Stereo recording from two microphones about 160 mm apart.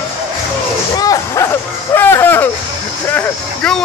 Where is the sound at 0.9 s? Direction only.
20° left (ahead or behind).